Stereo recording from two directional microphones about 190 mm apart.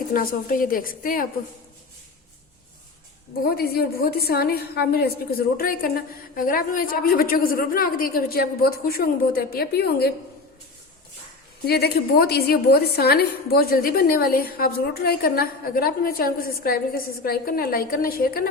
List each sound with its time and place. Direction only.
0.1 s a woman's voice: 50° left (ahead or behind)
3.4 s a woman's voice: 55° left (ahead or behind)
11.6 s a woman's voice: 55° left (ahead or behind)